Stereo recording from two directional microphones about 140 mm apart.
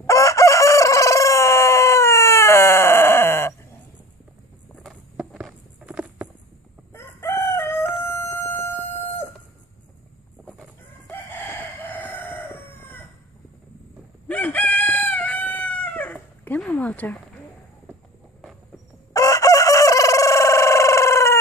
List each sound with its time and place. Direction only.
0.0 s chicken: 20° left (ahead or behind)
5.1 s a sound: 5° right (ahead or behind)
6.9 s crowing: 20° left (ahead or behind)
11.1 s chicken: 15° left (ahead or behind)
14.2 s chicken: 10° left (ahead or behind)
19.1 s chicken: 25° left (ahead or behind)